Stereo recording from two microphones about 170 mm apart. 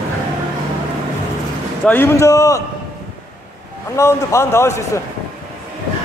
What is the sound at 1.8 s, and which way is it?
Speech, 10° left (ahead or behind).